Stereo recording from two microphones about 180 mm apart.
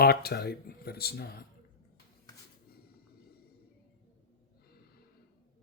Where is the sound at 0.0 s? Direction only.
60° left (ahead or behind).